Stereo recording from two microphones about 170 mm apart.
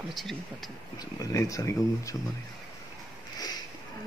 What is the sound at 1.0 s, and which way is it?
Speech, 20° left (ahead or behind).